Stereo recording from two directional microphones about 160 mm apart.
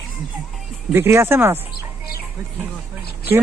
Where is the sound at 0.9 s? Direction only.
15° right (ahead or behind).